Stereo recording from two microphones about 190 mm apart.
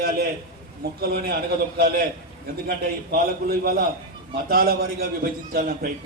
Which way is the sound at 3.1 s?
50° right (ahead or behind).